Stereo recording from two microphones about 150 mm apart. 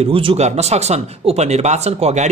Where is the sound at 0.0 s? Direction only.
40° right (ahead or behind).